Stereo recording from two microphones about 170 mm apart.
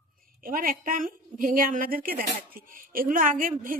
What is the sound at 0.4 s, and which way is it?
A woman's voice, 55° right (ahead or behind).